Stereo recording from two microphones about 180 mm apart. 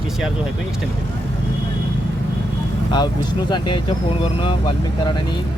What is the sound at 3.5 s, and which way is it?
Speech, 25° left (ahead or behind).